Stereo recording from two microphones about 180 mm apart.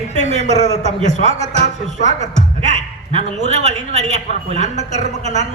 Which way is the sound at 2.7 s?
40° right (ahead or behind).